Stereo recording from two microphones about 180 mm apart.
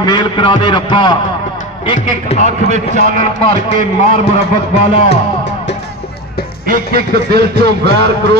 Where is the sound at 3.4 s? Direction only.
40° left (ahead or behind).